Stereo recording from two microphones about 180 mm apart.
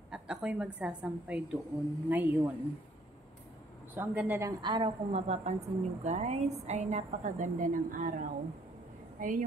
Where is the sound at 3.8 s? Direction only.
10° right (ahead or behind); by 9.3 s 50° right (ahead or behind).